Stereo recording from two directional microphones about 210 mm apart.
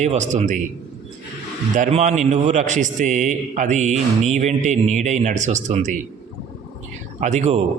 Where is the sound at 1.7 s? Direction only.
35° right (ahead or behind).